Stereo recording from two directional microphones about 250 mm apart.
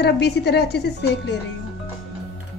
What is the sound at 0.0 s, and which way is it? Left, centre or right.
Speech, left.